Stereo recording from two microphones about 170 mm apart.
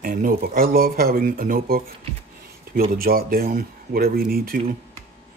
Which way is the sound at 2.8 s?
60° right (ahead or behind).